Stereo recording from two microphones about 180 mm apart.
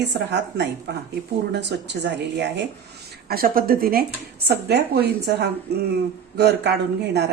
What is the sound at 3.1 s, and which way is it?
Speech, 55° right (ahead or behind).